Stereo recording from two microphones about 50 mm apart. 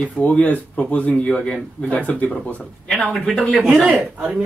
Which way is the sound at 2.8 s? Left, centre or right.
Centre.